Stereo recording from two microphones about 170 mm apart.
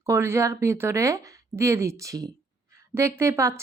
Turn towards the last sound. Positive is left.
turn(degrees=-15)  # may be behind; listen again after turning